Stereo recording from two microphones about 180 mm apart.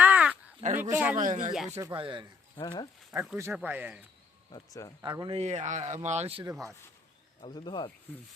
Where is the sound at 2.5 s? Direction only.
25° left (ahead or behind).